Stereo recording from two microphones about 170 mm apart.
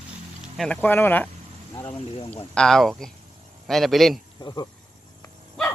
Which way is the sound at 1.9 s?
35° left (ahead or behind).